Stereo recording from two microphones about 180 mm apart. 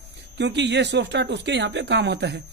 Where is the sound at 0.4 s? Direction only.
75° right (ahead or behind).